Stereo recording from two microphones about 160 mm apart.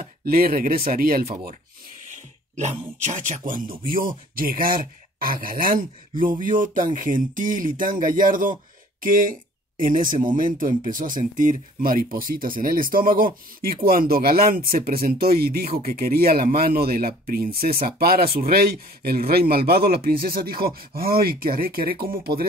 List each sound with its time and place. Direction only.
0.0 s speech: 70° right (ahead or behind)
2.0 s speech: 45° right (ahead or behind); by 22.5 s 65° right (ahead or behind)